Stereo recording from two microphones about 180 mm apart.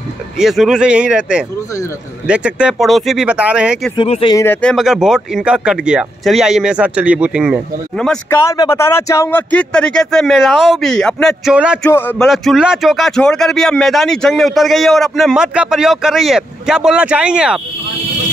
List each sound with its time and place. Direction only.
0.4 s speech: centre (ahead or behind)
3.9 s speech: 30° left (ahead or behind)
4.4 s speech: 10° left (ahead or behind)
8.3 s speech: 15° left (ahead or behind); by 11.8 s 5° right (ahead or behind)
11.8 s a sound: 10° left (ahead or behind)
12.3 s speech: 5° right (ahead or behind)